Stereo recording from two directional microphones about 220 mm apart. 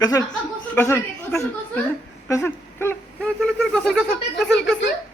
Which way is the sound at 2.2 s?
10° left (ahead or behind).